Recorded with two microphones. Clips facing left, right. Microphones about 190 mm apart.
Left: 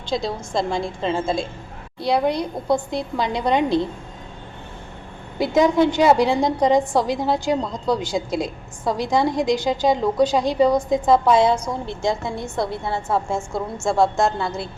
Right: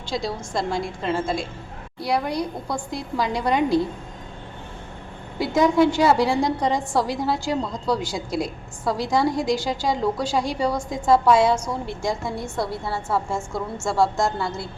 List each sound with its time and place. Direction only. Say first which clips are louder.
0.1 s a woman's voice: left 3 dB; 20° left (ahead or behind)
5.4 s a woman's voice: left 1 dB; 20° left (ahead or behind)